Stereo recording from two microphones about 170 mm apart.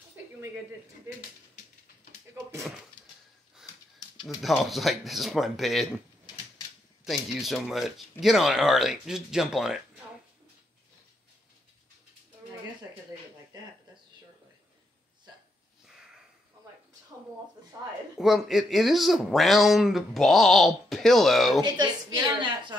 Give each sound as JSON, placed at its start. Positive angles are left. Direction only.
{"t": 4.4, "sound": "speech", "side_deg": 0}
{"t": 7.1, "sound": "speech", "side_deg": 0}
{"t": 18.1, "sound": "speech", "side_deg": 0}
{"t": 21.5, "sound": "a woman's voice", "side_deg": -25}